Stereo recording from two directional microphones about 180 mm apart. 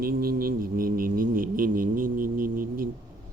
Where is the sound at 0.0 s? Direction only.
55° right (ahead or behind).